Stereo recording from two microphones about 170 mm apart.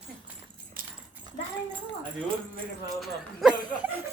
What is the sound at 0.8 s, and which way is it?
Dog, 55° right (ahead or behind).